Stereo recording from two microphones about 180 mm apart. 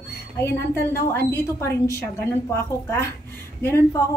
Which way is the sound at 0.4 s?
15° left (ahead or behind).